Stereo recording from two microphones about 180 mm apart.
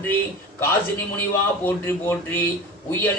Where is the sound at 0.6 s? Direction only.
15° left (ahead or behind).